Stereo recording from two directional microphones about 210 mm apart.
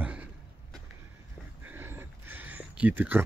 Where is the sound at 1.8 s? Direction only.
10° right (ahead or behind).